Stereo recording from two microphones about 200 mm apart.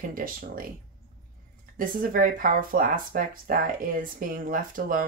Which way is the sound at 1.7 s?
45° right (ahead or behind).